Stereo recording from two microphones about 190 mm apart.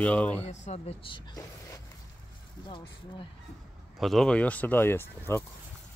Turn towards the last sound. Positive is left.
turn(degrees=10)  # may be behind; listen again after turning